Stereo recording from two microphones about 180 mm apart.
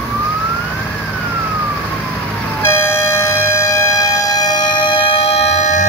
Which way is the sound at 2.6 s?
15° left (ahead or behind).